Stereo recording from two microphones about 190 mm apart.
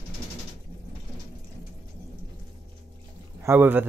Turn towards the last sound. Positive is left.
turn(degrees=-10)  # may be behind; listen again after turning